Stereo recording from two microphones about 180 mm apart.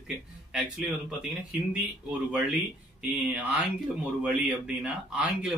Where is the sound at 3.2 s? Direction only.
10° right (ahead or behind).